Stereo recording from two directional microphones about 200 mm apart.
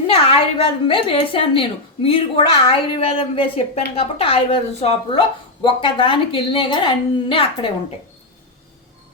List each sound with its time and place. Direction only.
0.1 s a woman's voice: 30° left (ahead or behind)